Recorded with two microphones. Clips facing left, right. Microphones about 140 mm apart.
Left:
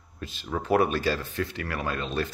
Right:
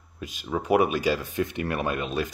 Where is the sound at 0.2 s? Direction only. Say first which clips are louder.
Right 2 dB; 10° right (ahead or behind).